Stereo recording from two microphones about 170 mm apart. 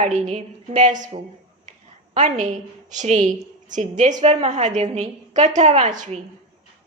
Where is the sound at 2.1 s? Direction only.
45° right (ahead or behind).